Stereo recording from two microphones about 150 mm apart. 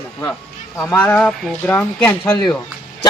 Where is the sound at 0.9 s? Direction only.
15° left (ahead or behind).